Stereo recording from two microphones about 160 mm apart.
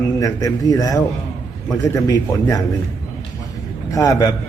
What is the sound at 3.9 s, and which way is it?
Speech, 20° left (ahead or behind).